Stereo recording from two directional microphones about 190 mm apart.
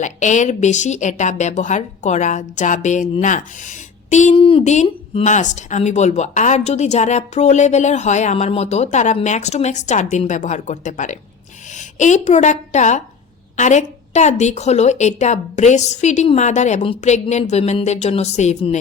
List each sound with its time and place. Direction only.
0.0 s a woman's voice: 40° left (ahead or behind)